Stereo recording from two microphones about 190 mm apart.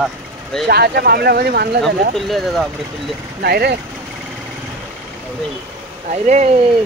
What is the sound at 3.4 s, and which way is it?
Speech, 55° right (ahead or behind).